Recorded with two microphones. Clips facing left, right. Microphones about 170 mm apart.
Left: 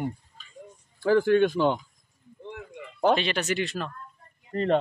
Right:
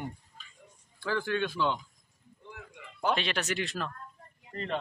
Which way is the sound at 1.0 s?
45° left (ahead or behind).